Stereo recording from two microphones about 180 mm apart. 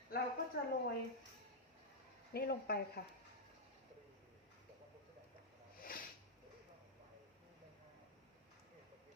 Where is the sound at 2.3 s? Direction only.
60° left (ahead or behind).